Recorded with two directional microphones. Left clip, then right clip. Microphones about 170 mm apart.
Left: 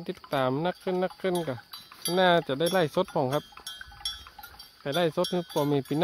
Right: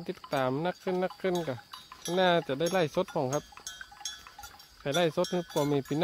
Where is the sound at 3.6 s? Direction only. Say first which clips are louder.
Left 4 dB; 35° left (ahead or behind).